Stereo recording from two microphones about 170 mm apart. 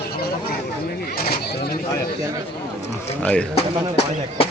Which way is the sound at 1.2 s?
65° left (ahead or behind).